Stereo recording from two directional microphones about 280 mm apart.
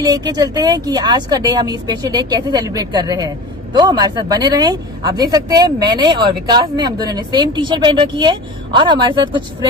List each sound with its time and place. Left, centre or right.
0.0 s a woman's voice: centre